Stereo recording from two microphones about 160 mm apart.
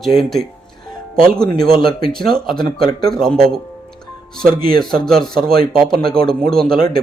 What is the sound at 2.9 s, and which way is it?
Speech, 25° left (ahead or behind).